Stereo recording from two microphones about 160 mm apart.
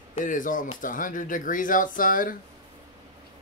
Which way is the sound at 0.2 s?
55° left (ahead or behind).